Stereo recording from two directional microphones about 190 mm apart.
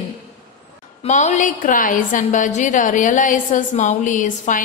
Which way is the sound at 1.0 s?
40° left (ahead or behind).